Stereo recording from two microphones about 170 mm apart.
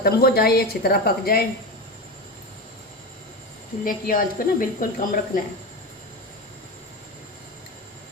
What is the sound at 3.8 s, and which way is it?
A woman's voice, 55° left (ahead or behind).